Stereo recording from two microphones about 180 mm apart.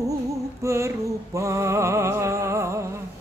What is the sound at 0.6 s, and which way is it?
Music, 15° right (ahead or behind).